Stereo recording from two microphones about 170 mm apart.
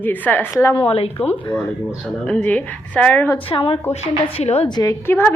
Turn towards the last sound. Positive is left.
turn(degrees=10)  # may be behind; listen again after turning